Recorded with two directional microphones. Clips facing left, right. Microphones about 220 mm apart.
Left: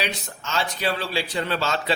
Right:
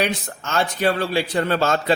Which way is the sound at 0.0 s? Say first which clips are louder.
Right 6 dB; 55° right (ahead or behind).